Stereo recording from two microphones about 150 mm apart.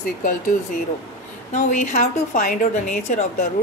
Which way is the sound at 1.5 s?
55° left (ahead or behind).